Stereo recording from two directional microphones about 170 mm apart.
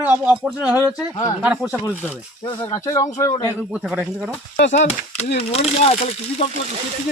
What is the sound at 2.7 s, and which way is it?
Speech, 20° left (ahead or behind).